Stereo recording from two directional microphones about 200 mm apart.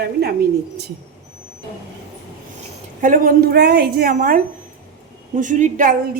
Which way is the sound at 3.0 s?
45° right (ahead or behind).